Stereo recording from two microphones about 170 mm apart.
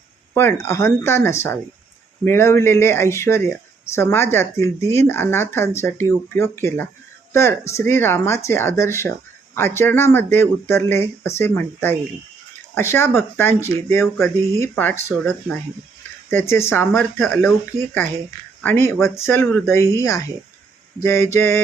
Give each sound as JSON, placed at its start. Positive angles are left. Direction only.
{"t": 0.3, "sound": "speech", "side_deg": 15}
{"t": 18.6, "sound": "speech", "side_deg": 15}